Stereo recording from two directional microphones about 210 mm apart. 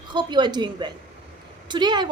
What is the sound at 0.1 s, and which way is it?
A woman's voice, 20° right (ahead or behind).